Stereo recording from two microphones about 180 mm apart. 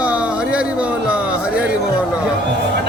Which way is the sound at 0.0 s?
5° right (ahead or behind).